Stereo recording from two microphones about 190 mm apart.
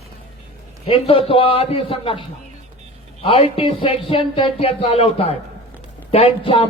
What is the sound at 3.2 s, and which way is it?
Speech, 30° left (ahead or behind).